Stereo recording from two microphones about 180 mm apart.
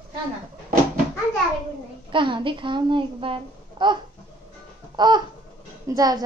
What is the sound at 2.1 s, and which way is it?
A child's voice, 25° right (ahead or behind).